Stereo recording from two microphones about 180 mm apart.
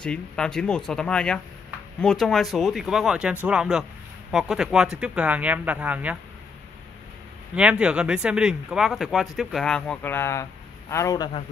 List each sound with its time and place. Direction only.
0.0 s speech: 5° left (ahead or behind)
7.5 s speech: 5° right (ahead or behind); by 11.2 s 15° left (ahead or behind)